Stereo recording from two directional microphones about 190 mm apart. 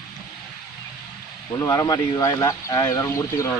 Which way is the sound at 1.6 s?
15° left (ahead or behind).